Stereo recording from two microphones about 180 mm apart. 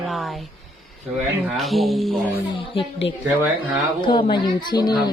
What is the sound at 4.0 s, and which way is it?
A woman's voice, 25° left (ahead or behind).